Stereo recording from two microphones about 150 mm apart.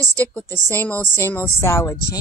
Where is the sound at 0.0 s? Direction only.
15° left (ahead or behind).